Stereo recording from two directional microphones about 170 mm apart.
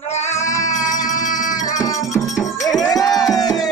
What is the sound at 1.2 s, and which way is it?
Music, 50° left (ahead or behind).